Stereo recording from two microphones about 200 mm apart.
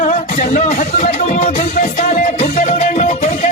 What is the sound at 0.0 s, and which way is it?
Music, 40° left (ahead or behind).